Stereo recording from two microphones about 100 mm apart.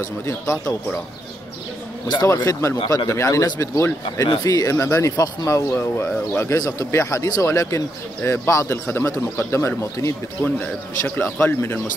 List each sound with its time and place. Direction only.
0.0 s speech: 30° left (ahead or behind)
2.2 s speech: 30° left (ahead or behind)